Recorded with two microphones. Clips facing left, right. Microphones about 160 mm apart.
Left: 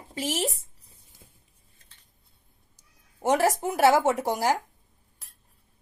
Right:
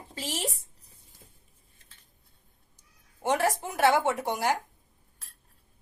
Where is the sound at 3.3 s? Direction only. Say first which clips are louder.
Left 4 dB; 20° left (ahead or behind).